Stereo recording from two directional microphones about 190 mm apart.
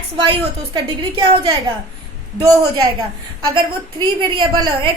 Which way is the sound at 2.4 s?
20° right (ahead or behind).